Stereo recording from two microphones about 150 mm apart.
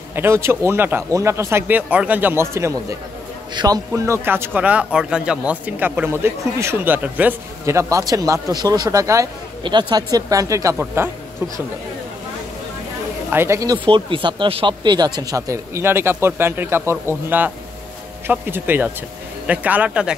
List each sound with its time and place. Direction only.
0.1 s speech: 15° right (ahead or behind)
9.6 s speech: 30° right (ahead or behind)
13.3 s speech: 15° right (ahead or behind)
13.8 s speech: 35° right (ahead or behind); by 20.2 s 5° right (ahead or behind)